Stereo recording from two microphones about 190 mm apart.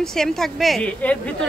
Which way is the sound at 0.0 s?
Centre (ahead or behind).